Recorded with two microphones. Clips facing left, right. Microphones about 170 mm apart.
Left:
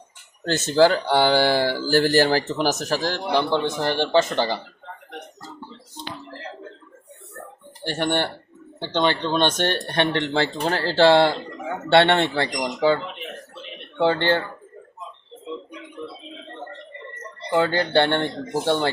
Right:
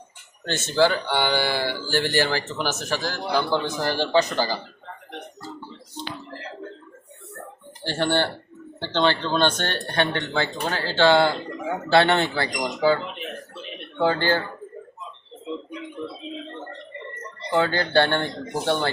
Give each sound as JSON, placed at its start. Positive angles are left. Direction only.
{"t": 0.4, "sound": "speech", "side_deg": 35}
{"t": 3.5, "sound": "speech", "side_deg": 25}
{"t": 7.9, "sound": "speech", "side_deg": 15}
{"t": 14.0, "sound": "speech", "side_deg": 25}
{"t": 17.5, "sound": "speech", "side_deg": 20}